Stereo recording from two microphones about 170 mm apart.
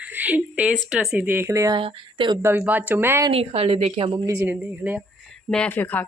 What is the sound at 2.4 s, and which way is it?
Speech, 15° right (ahead or behind).